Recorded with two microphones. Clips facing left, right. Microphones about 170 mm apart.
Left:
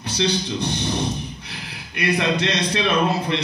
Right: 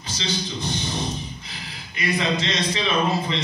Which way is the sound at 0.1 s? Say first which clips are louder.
Left 6 dB; 65° left (ahead or behind).